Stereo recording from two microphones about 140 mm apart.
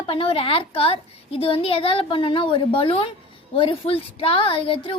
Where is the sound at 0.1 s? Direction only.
40° left (ahead or behind).